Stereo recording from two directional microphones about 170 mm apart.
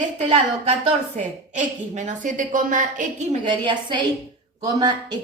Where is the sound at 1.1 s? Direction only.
45° right (ahead or behind).